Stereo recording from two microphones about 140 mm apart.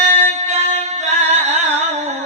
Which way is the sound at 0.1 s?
55° right (ahead or behind).